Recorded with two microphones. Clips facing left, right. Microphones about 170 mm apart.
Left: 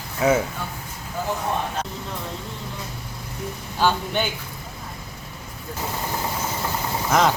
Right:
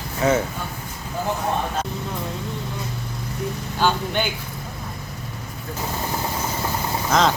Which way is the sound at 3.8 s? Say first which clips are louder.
Even; 5° left (ahead or behind).